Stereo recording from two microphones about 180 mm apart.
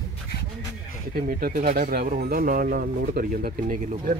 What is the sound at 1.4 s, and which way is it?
Speech, 50° right (ahead or behind).